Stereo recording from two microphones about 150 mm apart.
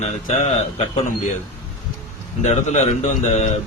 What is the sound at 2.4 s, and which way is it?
A man's voice, 50° left (ahead or behind).